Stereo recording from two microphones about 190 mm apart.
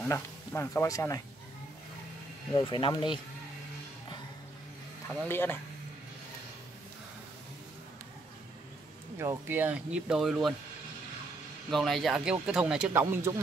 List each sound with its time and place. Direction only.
0.1 s speech: 15° left (ahead or behind)
2.5 s speech: 25° left (ahead or behind)
5.0 s speech: 10° left (ahead or behind)
9.2 s speech: 15° right (ahead or behind)
11.7 s speech: centre (ahead or behind)